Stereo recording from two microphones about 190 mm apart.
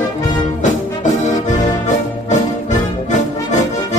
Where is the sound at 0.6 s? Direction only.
40° left (ahead or behind).